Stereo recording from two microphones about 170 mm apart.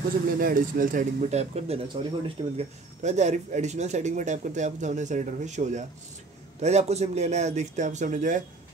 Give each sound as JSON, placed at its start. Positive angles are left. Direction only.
{"t": 0.4, "sound": "speech", "side_deg": -55}